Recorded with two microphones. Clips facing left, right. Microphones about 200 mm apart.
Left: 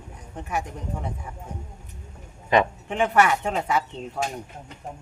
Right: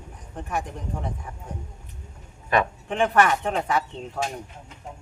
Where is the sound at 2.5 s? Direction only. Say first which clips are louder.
Left 3 dB; 20° left (ahead or behind).